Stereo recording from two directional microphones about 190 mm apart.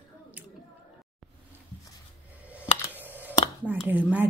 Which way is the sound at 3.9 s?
10° right (ahead or behind).